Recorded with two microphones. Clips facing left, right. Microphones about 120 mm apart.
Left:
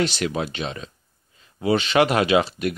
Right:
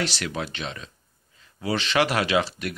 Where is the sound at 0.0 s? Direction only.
20° left (ahead or behind).